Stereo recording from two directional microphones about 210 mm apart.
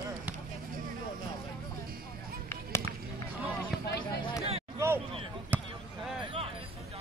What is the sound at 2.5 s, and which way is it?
Basketball bounce, 10° left (ahead or behind).